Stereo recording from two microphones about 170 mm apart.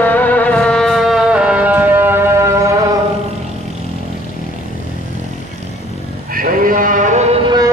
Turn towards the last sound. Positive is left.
turn(degrees=-40)  # may be behind; listen again after turning